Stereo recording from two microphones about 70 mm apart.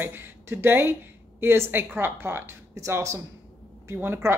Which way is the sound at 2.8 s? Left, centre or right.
Right.